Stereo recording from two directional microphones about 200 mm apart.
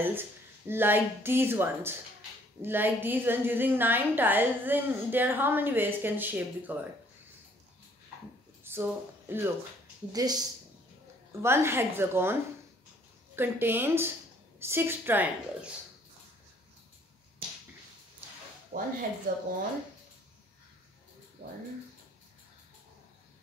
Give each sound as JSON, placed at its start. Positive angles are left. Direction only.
{"t": 0.0, "sound": "a woman's voice", "side_deg": -10}
{"t": 8.6, "sound": "speech", "side_deg": -10}
{"t": 11.4, "sound": "a woman's voice", "side_deg": -10}
{"t": 13.4, "sound": "a woman's voice", "side_deg": -10}
{"t": 18.7, "sound": "speech", "side_deg": -45}
{"t": 21.4, "sound": "speech", "side_deg": -30}